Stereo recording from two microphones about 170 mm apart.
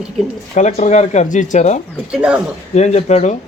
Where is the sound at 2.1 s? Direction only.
5° right (ahead or behind).